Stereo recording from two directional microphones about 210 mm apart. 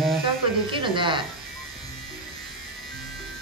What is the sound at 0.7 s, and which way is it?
Speech, 25° right (ahead or behind).